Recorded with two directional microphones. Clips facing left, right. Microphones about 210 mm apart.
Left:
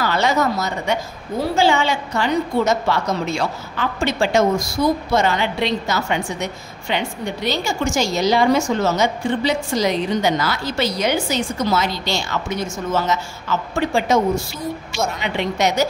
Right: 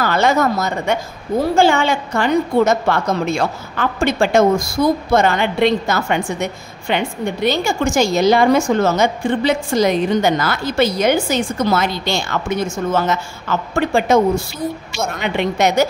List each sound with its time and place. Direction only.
0.0 s a woman's voice: 50° right (ahead or behind)